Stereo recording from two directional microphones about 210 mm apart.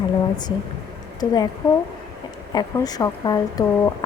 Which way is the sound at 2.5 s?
20° left (ahead or behind).